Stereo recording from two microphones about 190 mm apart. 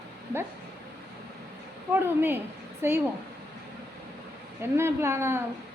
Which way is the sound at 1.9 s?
10° right (ahead or behind).